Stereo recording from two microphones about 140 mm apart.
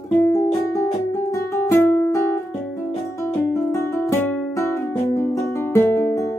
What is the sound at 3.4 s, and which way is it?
Music, 20° left (ahead or behind).